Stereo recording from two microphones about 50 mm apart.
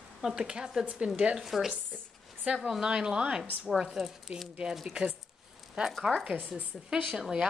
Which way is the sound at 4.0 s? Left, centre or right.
Centre.